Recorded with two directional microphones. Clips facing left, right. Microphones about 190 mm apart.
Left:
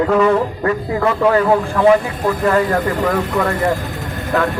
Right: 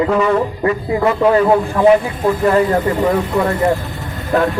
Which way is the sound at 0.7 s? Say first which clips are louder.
Right 3 dB; 20° right (ahead or behind).